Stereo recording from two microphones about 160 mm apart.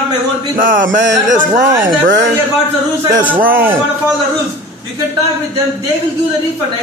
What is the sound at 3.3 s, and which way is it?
Speech, 10° right (ahead or behind).